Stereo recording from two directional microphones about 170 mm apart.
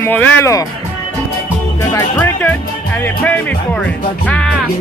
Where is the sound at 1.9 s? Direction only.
15° left (ahead or behind).